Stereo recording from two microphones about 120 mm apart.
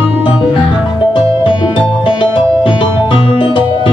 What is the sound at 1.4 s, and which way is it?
Music, 45° left (ahead or behind).